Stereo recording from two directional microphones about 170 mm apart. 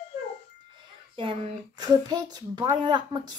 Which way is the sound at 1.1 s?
30° right (ahead or behind).